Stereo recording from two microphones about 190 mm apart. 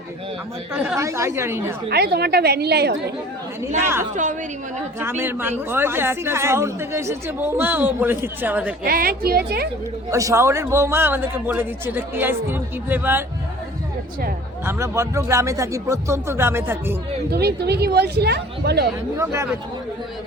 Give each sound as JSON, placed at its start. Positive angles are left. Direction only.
{"t": 0.7, "sound": "a woman's voice", "side_deg": -10}
{"t": 1.9, "sound": "speech", "side_deg": -55}
{"t": 4.2, "sound": "a woman's voice", "side_deg": -40}
{"t": 4.9, "sound": "a woman's voice", "side_deg": -10}
{"t": 8.8, "sound": "speech", "side_deg": -50}
{"t": 10.1, "sound": "a woman's voice", "side_deg": -15}
{"t": 14.6, "sound": "a woman's voice", "side_deg": -15}
{"t": 17.3, "sound": "speech", "side_deg": -60}
{"t": 19.1, "sound": "a woman's voice", "side_deg": -15}